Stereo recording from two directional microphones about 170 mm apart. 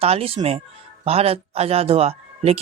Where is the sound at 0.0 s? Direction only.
35° right (ahead or behind).